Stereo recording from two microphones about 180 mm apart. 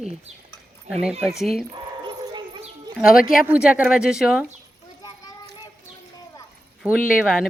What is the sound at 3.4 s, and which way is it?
Speech, 5° right (ahead or behind).